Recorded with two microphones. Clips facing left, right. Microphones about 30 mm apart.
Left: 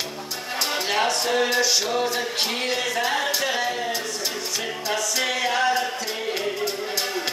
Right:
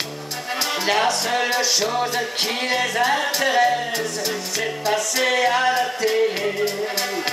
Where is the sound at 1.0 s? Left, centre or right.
Right.